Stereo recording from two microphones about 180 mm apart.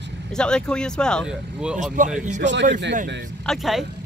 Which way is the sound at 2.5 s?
75° right (ahead or behind).